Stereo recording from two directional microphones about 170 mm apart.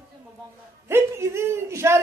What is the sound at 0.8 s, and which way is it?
A woman's voice, 15° right (ahead or behind).